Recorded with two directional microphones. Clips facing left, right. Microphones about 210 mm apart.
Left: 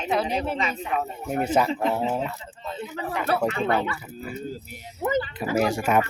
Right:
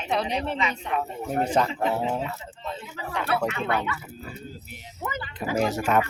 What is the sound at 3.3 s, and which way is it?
Speech, 35° left (ahead or behind).